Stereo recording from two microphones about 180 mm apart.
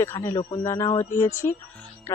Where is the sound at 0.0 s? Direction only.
15° left (ahead or behind).